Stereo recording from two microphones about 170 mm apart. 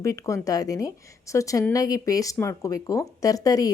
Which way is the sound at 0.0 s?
20° left (ahead or behind).